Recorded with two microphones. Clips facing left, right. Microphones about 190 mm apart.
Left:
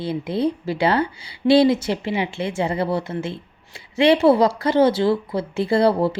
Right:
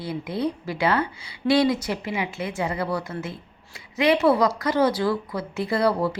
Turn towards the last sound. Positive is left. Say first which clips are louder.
# left 5 dB
turn(degrees=30)  # may be behind; listen again after turning